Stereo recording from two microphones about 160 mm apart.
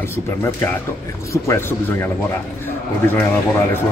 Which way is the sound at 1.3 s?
15° left (ahead or behind).